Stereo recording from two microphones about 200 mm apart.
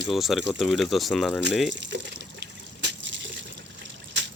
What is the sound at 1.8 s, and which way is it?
Water, 60° right (ahead or behind).